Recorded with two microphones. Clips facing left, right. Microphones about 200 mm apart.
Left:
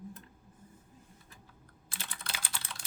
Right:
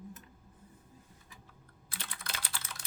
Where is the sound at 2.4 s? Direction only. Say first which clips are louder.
Even; 25° left (ahead or behind).